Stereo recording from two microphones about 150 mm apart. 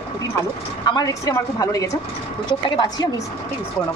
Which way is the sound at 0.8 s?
25° left (ahead or behind).